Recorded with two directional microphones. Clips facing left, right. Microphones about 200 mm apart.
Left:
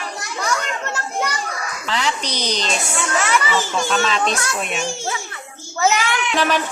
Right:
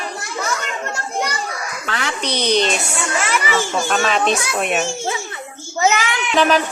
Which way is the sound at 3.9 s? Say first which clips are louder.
Right 3 dB; 55° right (ahead or behind).